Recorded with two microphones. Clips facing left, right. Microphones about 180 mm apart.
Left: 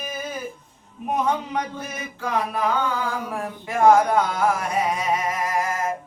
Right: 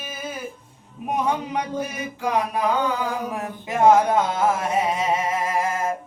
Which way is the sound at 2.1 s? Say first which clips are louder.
Right 2 dB; 15° right (ahead or behind).